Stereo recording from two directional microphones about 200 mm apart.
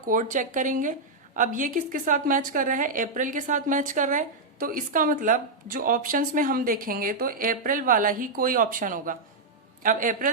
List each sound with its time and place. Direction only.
0.1 s a woman's voice: 40° right (ahead or behind)